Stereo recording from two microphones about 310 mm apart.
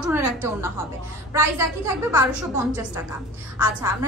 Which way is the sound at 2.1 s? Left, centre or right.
Centre.